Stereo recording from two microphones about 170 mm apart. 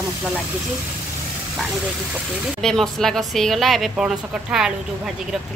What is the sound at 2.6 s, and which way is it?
A woman's voice, centre (ahead or behind).